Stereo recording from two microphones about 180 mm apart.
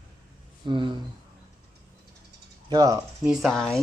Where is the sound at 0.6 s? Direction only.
25° right (ahead or behind).